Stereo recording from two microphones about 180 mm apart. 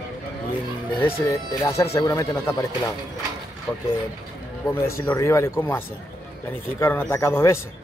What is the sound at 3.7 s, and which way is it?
Speech, 5° left (ahead or behind).